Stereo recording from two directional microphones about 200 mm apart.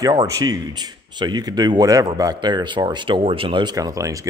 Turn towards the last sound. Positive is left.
turn(degrees=-15)  # may be behind; listen again after turning